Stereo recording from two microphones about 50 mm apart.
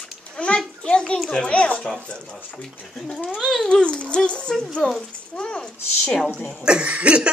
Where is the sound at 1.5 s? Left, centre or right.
Left.